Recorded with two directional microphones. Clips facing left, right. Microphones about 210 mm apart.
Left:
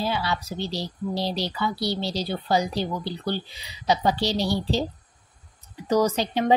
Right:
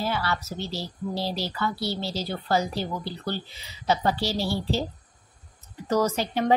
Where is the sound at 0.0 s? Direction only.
15° left (ahead or behind).